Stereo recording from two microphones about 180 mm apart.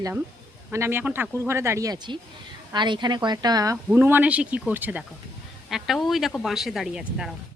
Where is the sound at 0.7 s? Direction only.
15° right (ahead or behind).